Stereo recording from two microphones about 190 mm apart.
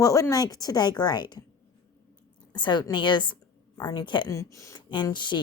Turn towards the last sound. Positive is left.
turn(degrees=25)  # may be behind; listen again after turning